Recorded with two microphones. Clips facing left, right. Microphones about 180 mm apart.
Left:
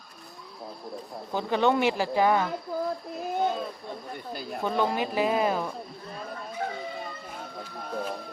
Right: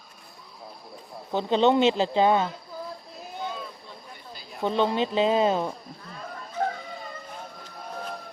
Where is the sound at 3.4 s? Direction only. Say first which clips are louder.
Left 5 dB; 45° left (ahead or behind).